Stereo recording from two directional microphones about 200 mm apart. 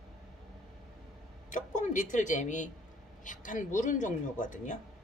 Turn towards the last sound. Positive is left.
turn(degrees=40)  # may be behind; listen again after turning